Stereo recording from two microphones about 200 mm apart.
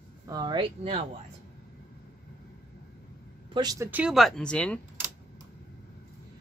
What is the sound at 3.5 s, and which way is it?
Speech, 20° right (ahead or behind).